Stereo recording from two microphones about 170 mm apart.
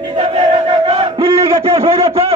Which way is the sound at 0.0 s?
35° right (ahead or behind).